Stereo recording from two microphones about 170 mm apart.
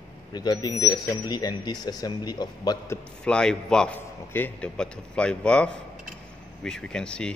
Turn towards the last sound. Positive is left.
turn(degrees=5)  # may be behind; listen again after turning